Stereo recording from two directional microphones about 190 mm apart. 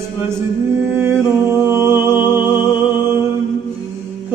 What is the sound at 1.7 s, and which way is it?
Music, 15° right (ahead or behind).